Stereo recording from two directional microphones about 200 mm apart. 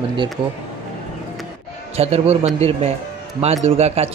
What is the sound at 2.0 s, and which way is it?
Speech, 30° right (ahead or behind).